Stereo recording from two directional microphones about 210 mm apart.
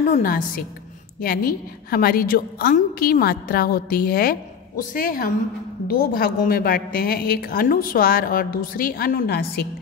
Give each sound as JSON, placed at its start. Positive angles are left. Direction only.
{"t": 0.1, "sound": "a woman's voice", "side_deg": 40}